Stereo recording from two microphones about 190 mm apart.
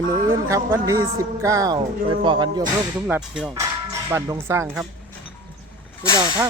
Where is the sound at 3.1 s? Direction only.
5° right (ahead or behind).